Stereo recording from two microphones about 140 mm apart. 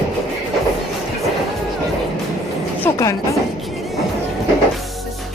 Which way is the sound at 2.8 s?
20° left (ahead or behind).